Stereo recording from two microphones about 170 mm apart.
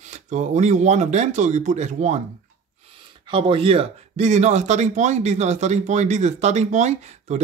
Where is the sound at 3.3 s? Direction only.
30° right (ahead or behind).